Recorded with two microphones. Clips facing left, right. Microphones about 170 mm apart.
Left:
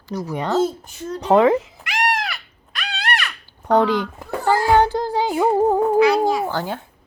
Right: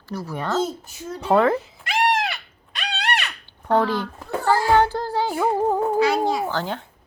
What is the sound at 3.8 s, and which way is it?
Music, 15° left (ahead or behind).